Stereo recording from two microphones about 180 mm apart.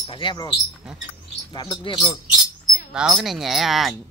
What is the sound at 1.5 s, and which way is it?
Speech, 25° left (ahead or behind).